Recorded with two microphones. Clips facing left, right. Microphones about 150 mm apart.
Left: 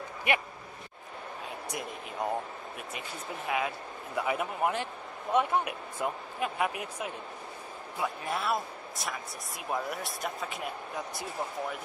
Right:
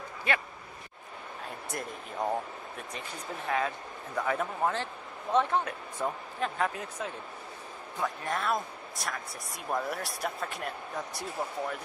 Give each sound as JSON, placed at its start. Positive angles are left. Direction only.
{"t": 0.3, "sound": "speech", "side_deg": 15}
{"t": 1.7, "sound": "speech", "side_deg": 0}
{"t": 3.4, "sound": "speech", "side_deg": 10}